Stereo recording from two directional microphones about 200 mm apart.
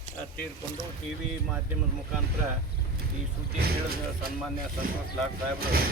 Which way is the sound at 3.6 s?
50° right (ahead or behind).